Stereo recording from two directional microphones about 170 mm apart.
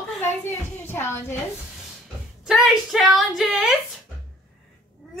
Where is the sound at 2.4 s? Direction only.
Centre (ahead or behind).